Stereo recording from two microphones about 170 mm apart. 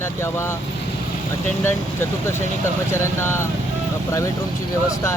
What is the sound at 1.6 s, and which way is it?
Speech, 15° left (ahead or behind).